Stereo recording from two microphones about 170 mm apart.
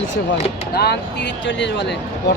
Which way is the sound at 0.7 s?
70° left (ahead or behind).